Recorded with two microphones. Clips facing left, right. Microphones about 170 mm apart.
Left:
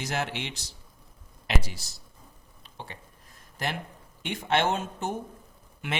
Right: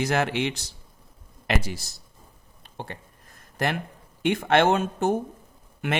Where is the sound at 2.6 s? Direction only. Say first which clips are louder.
Right 6 dB; 50° right (ahead or behind).